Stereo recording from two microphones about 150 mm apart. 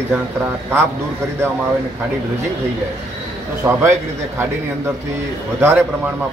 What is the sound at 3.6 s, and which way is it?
Speech, 10° right (ahead or behind).